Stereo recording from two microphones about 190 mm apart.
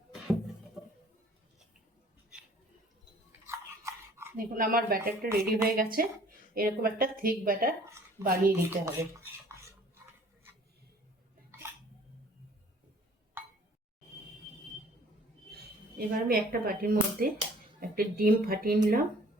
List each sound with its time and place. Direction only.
3.4 s dog: 15° right (ahead or behind)
4.4 s speech: 50° right (ahead or behind)
8.8 s dishes: 15° right (ahead or behind)
16.0 s speech: 50° right (ahead or behind)